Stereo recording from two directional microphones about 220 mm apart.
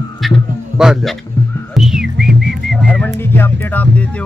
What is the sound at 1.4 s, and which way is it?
Music, 15° left (ahead or behind).